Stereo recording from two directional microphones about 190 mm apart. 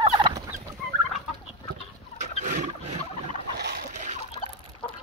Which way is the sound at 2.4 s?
40° right (ahead or behind).